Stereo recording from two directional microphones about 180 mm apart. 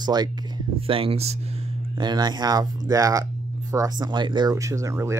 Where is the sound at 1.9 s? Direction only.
25° right (ahead or behind).